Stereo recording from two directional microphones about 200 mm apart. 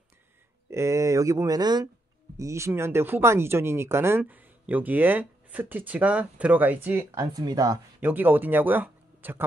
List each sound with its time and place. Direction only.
0.7 s speech: 15° right (ahead or behind)